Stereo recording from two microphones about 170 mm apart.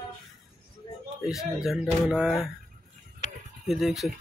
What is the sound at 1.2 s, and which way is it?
Speech, centre (ahead or behind).